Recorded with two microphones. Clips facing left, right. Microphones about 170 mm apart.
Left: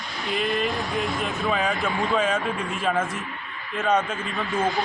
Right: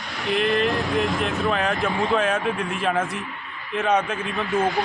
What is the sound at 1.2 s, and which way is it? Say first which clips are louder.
Speech: right 2 dB; 5° left (ahead or behind).